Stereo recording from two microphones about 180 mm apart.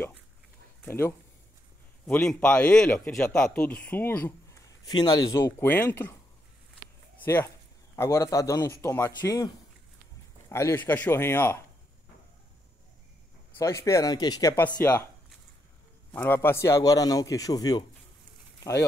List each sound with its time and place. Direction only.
0.8 s speech: 10° left (ahead or behind)
4.8 s speech: 25° left (ahead or behind)
7.2 s speech: 15° left (ahead or behind)
10.5 s speech: 15° left (ahead or behind)
13.5 s speech: 15° left (ahead or behind)
16.1 s a man's voice: 10° left (ahead or behind)